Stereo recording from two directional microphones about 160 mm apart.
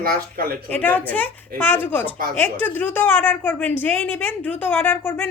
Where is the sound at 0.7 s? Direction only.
10° left (ahead or behind).